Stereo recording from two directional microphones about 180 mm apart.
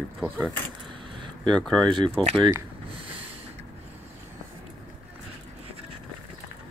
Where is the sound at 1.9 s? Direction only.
30° right (ahead or behind).